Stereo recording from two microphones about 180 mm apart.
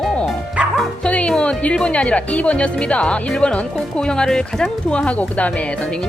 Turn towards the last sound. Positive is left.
turn(degrees=10)  # may be behind; listen again after turning